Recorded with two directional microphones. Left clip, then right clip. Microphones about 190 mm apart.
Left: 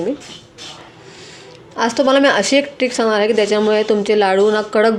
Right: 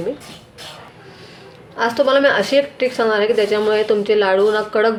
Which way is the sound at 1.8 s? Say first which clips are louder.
Left 1 dB; 40° left (ahead or behind).